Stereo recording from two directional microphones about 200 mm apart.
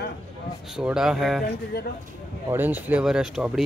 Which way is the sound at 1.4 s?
55° left (ahead or behind).